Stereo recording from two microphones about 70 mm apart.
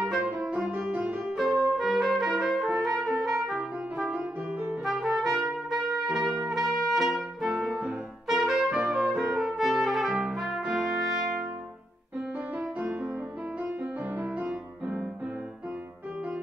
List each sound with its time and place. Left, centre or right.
0.0 s music: centre
1.3 s trumpet: centre
3.0 s music: centre
4.8 s trumpet: centre
6.5 s music: centre
8.3 s trumpet: centre
8.8 s music: centre
10.3 s brass instrument: centre
12.5 s music: right
14.1 s music: right